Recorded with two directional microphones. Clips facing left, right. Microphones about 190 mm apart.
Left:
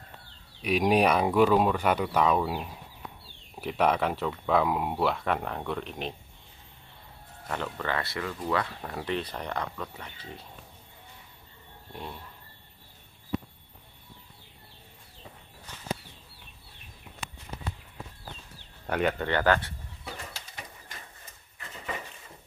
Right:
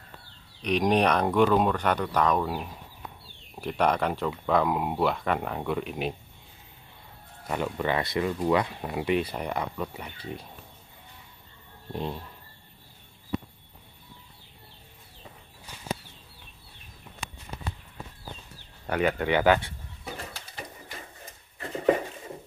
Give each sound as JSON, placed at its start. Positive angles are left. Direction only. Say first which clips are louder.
{"t": 0.6, "sound": "speech", "louder": "even", "side_deg": 5}
{"t": 7.4, "sound": "speech", "louder": "right 4 dB", "side_deg": -10}
{"t": 11.9, "sound": "speech", "louder": "right 8 dB", "side_deg": -25}
{"t": 18.9, "sound": "speech", "louder": "right 2 dB", "side_deg": 0}
{"t": 21.5, "sound": "a sound", "louder": "right 14 dB", "side_deg": -50}